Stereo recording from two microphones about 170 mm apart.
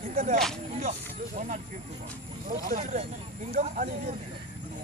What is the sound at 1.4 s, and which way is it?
Speech, 45° right (ahead or behind).